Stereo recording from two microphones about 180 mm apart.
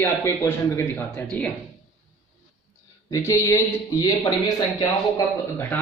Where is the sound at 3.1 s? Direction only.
15° left (ahead or behind).